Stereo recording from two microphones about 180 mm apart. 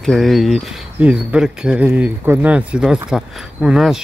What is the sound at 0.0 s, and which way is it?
Speech, centre (ahead or behind).